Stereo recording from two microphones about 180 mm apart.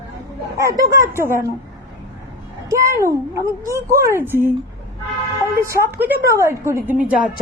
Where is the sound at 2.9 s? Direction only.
15° right (ahead or behind).